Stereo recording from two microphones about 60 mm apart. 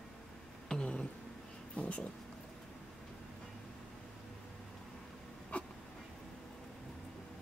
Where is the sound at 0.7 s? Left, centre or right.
Centre.